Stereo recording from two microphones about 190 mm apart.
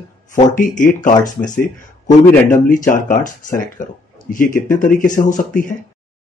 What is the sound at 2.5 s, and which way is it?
Speech, 45° left (ahead or behind).